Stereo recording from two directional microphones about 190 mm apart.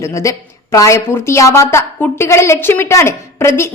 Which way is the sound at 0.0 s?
15° left (ahead or behind).